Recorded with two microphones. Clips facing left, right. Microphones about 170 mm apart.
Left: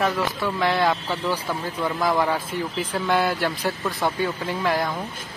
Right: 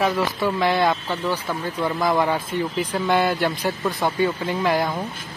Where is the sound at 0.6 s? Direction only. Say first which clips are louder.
Right 1 dB; centre (ahead or behind).